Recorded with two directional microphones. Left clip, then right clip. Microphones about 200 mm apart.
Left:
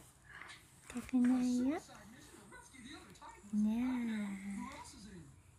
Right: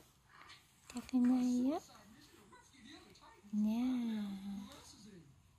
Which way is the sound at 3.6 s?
15° right (ahead or behind).